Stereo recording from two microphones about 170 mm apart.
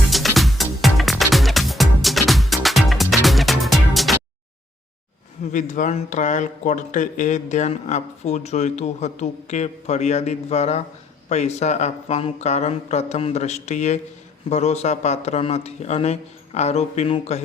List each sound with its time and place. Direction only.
0.1 s music: centre (ahead or behind)
5.5 s speech: 50° left (ahead or behind)